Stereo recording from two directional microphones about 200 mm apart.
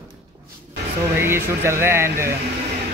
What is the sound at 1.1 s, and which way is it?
Speech, 10° right (ahead or behind).